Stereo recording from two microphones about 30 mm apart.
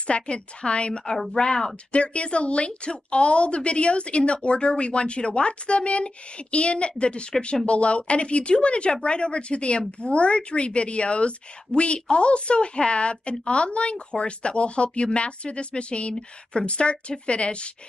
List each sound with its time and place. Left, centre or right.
0.0 s a woman's voice: left
1.9 s a woman's voice: left